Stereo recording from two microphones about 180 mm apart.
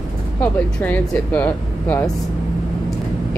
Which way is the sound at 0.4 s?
10° left (ahead or behind).